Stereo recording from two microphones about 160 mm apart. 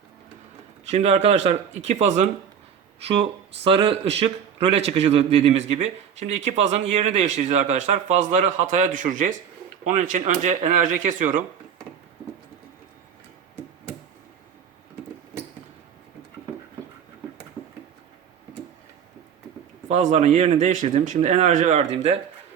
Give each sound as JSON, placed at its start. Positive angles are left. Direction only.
{"t": 0.9, "sound": "a man's voice", "side_deg": -40}
{"t": 19.9, "sound": "a man's voice", "side_deg": -45}